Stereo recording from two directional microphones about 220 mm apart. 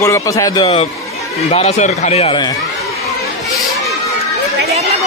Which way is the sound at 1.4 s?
30° left (ahead or behind).